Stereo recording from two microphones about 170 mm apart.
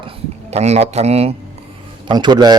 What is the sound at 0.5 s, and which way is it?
Speech, 40° right (ahead or behind).